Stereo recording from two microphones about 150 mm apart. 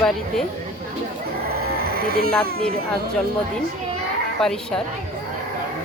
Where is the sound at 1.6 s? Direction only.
90° right.